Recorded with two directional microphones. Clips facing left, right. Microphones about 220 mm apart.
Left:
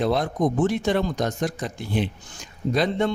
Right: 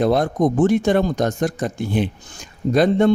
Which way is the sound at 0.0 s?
50° right (ahead or behind).